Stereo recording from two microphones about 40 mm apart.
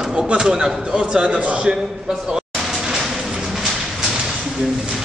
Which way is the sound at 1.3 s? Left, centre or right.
Right.